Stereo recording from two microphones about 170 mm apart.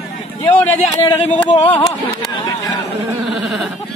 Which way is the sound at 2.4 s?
25° left (ahead or behind).